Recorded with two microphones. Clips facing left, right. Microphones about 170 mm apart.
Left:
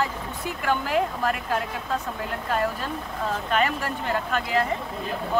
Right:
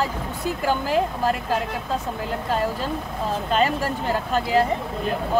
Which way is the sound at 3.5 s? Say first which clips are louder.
Right 4 dB; 30° right (ahead or behind).